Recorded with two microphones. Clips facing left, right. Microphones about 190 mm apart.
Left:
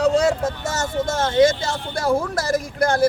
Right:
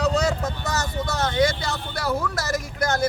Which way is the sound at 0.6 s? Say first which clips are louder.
Left 2 dB; 25° left (ahead or behind).